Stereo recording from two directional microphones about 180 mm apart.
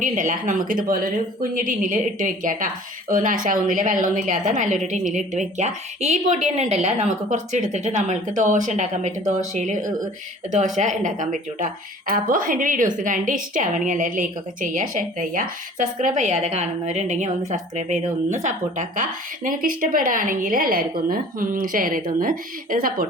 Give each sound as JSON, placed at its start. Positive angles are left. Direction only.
{"t": 0.0, "sound": "a woman's voice", "side_deg": -45}